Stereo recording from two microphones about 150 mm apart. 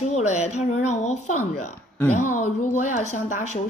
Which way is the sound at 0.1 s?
45° left (ahead or behind).